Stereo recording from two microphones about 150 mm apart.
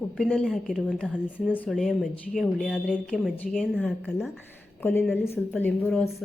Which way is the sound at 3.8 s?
10° left (ahead or behind).